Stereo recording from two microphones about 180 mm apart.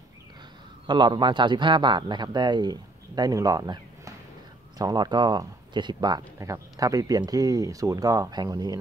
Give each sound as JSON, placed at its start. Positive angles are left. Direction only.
{"t": 0.8, "sound": "speech", "side_deg": -25}